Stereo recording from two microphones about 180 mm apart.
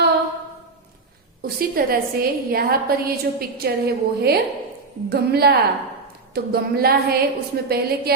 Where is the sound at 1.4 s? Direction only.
55° right (ahead or behind).